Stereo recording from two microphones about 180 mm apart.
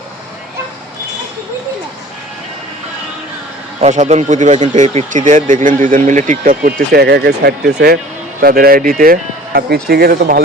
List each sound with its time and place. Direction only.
3.8 s speech: 40° right (ahead or behind); by 7.9 s 65° right (ahead or behind)
8.4 s speech: 55° right (ahead or behind)